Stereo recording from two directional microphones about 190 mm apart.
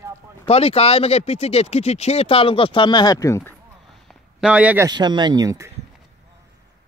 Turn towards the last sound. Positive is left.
turn(degrees=-15)  # may be behind; listen again after turning